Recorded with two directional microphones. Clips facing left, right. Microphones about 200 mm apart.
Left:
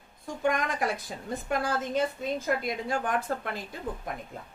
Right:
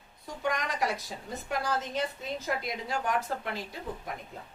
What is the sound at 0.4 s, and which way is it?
Speech, 50° left (ahead or behind).